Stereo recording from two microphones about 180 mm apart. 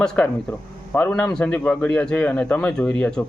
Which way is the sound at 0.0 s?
5° left (ahead or behind).